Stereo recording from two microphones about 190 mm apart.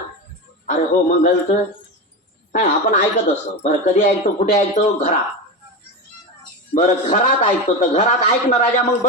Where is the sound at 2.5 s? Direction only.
45° left (ahead or behind).